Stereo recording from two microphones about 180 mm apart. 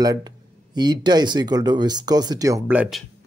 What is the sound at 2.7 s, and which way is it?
Speech, 5° right (ahead or behind).